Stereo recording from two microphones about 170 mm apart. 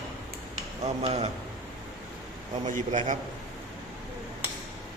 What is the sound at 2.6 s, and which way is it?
Speech, 45° right (ahead or behind).